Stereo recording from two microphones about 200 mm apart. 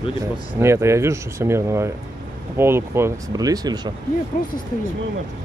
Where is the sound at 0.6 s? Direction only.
15° right (ahead or behind).